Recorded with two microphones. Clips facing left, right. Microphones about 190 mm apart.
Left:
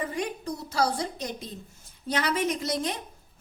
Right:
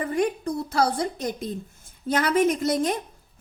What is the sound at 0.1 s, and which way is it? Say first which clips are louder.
A woman's voice: right 7 dB; 55° right (ahead or behind).